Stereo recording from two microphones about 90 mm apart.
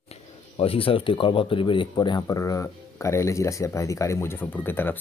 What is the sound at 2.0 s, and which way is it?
Speech, 50° left (ahead or behind).